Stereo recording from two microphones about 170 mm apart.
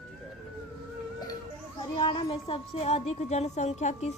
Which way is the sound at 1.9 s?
25° left (ahead or behind).